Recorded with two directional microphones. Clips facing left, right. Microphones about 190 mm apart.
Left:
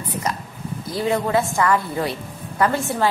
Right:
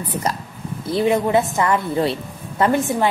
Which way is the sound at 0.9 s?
20° right (ahead or behind).